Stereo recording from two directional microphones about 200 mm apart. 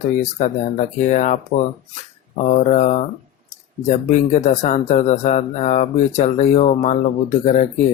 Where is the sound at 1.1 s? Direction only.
35° left (ahead or behind).